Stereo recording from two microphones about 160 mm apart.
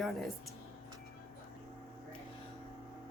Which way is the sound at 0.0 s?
Centre (ahead or behind).